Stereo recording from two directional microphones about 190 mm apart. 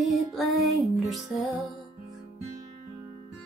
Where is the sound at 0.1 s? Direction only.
Centre (ahead or behind).